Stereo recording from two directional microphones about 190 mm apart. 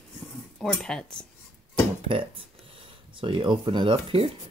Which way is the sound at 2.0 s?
30° right (ahead or behind).